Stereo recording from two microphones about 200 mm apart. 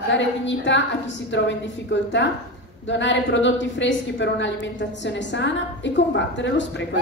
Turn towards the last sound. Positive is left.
turn(degrees=65)  # may be behind; listen again after turning